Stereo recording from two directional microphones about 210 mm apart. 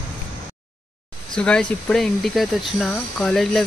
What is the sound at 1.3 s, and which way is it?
Speech, 5° left (ahead or behind).